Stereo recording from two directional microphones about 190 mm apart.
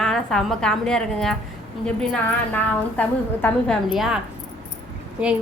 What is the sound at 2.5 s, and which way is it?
A woman's voice, 10° left (ahead or behind).